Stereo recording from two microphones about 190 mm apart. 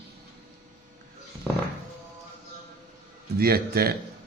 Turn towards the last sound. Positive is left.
turn(degrees=-55)  # may be behind; listen again after turning